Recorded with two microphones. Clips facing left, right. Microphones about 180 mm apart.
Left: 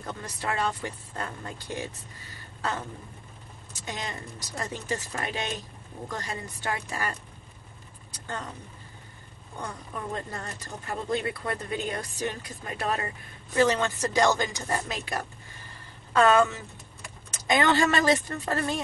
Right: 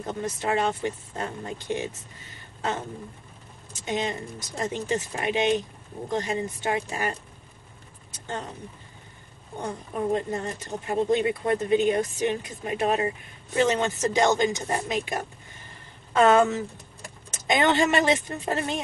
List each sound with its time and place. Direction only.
0.0 s speech: 20° right (ahead or behind)
3.8 s speech: 20° right (ahead or behind)
8.1 s vehicle: 25° right (ahead or behind)
10.1 s speech: 20° right (ahead or behind)